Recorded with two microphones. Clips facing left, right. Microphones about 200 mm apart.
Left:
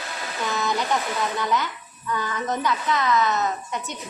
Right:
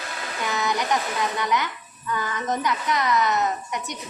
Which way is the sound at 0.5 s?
15° right (ahead or behind).